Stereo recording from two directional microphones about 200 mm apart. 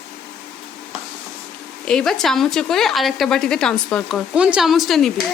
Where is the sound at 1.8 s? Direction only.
5° left (ahead or behind).